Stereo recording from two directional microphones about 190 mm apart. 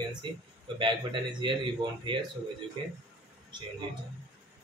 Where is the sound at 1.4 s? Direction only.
25° right (ahead or behind).